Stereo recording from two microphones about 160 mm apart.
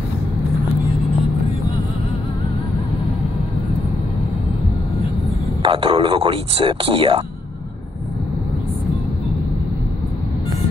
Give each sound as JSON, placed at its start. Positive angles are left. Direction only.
{"t": 5.6, "sound": "speech", "side_deg": -35}